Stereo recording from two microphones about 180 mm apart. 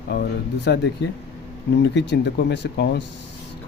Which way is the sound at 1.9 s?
75° left (ahead or behind).